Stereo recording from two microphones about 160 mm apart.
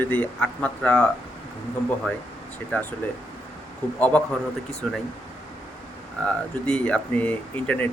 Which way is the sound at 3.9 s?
10° left (ahead or behind).